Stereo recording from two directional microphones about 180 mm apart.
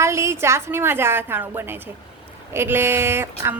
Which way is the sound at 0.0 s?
15° right (ahead or behind).